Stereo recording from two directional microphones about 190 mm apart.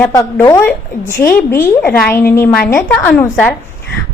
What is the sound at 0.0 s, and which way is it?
A woman's voice, 15° left (ahead or behind).